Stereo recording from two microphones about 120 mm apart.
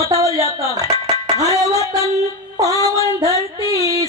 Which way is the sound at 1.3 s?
30° right (ahead or behind).